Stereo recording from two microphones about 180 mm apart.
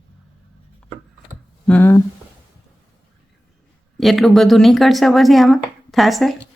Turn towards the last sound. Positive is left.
turn(degrees=0)  # may be behind; listen again after turning